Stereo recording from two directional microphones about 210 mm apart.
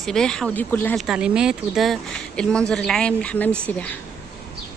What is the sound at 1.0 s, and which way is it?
Speech, 5° right (ahead or behind).